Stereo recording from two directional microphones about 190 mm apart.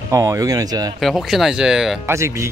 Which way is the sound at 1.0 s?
Centre (ahead or behind).